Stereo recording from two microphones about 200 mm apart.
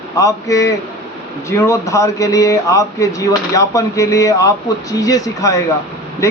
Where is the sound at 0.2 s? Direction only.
15° left (ahead or behind).